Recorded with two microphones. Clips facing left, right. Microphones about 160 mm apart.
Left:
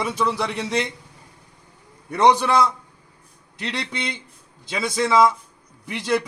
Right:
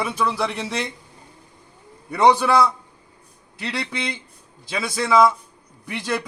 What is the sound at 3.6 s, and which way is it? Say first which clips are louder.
Speech: right 1 dB; 5° right (ahead or behind).